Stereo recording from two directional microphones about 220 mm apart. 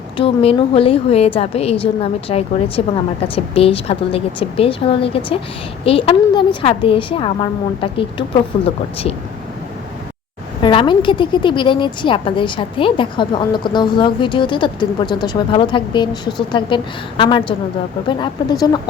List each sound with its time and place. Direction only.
0.2 s a woman's voice: 25° left (ahead or behind)
8.6 s a woman's voice: 25° left (ahead or behind)
10.6 s a woman's voice: 20° left (ahead or behind)